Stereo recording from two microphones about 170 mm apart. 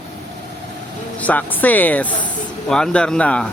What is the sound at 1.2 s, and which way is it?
Speech, 10° left (ahead or behind).